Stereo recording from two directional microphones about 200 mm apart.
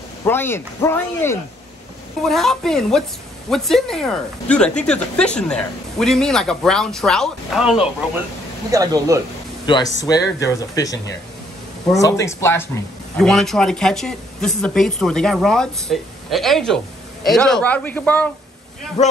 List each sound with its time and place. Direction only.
0.2 s speech: 10° left (ahead or behind)
2.2 s speech: centre (ahead or behind)
8.7 s speech: 15° right (ahead or behind)
10.0 s speech: 15° left (ahead or behind)
13.2 s speech: centre (ahead or behind)